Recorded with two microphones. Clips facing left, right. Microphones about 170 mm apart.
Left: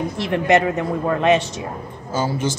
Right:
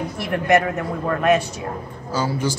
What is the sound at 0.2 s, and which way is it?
A man's voice, 25° left (ahead or behind).